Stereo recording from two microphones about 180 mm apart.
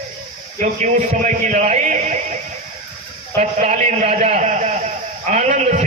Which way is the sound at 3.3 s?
40° right (ahead or behind).